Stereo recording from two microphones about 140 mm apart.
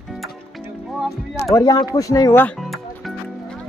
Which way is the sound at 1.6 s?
25° left (ahead or behind).